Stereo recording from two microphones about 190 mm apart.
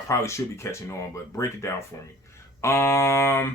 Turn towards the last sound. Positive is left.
turn(degrees=15)  # may be behind; listen again after turning